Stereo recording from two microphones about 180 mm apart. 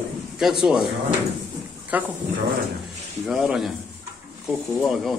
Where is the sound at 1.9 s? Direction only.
10° right (ahead or behind).